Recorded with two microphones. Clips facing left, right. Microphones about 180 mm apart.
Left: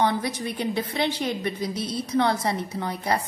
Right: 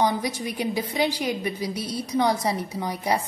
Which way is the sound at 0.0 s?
15° right (ahead or behind).